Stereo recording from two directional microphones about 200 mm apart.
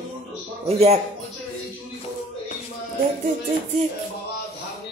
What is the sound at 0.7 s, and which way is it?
Music, 30° right (ahead or behind).